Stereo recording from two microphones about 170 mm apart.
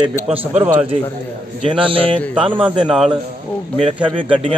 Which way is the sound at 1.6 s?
30° right (ahead or behind).